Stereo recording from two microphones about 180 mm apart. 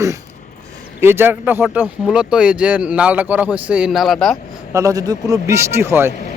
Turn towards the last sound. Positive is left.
turn(degrees=-15)  # may be behind; listen again after turning